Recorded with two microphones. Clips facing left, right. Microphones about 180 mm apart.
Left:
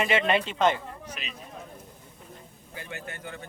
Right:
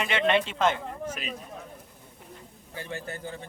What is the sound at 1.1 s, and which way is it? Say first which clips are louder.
Speech: right 6 dB; 45° right (ahead or behind).